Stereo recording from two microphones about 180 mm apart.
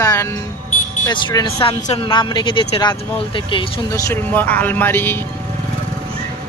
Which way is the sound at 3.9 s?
10° left (ahead or behind).